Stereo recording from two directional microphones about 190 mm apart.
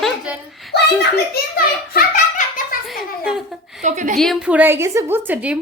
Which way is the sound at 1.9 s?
45° left (ahead or behind).